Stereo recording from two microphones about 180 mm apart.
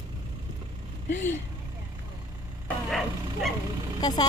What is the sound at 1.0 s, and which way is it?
Speech, 90° left.